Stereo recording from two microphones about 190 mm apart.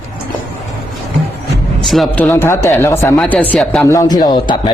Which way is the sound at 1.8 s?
Centre (ahead or behind).